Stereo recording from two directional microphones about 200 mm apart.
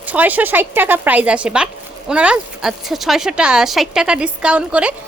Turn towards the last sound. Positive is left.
turn(degrees=-5)  # may be behind; listen again after turning